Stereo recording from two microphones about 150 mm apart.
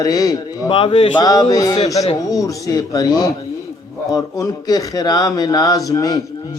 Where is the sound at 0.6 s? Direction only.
40° left (ahead or behind).